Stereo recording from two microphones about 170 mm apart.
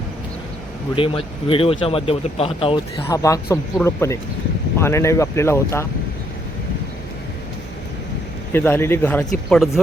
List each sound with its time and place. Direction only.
0.9 s speech: 30° left (ahead or behind)
3.1 s speech: 20° left (ahead or behind)
8.5 s speech: 15° left (ahead or behind)